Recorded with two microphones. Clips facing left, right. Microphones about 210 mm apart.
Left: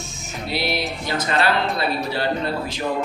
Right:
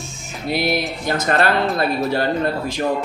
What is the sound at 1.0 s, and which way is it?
A man's voice, 50° right (ahead or behind).